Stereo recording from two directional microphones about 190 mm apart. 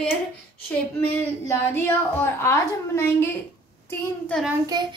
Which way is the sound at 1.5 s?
10° left (ahead or behind).